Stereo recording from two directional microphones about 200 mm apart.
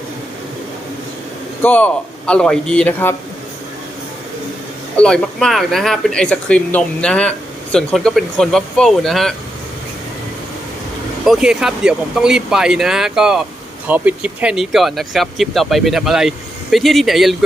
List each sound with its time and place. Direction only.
1.6 s a man's voice: 10° left (ahead or behind)
4.9 s speech: 5° left (ahead or behind)
11.3 s speech: 5° right (ahead or behind)